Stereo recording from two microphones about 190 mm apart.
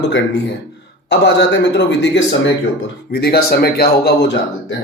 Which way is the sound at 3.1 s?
55° left (ahead or behind).